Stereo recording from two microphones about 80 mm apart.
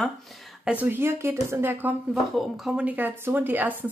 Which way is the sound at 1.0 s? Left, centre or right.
Right.